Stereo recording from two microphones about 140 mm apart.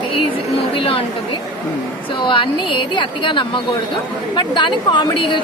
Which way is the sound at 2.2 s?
35° left (ahead or behind).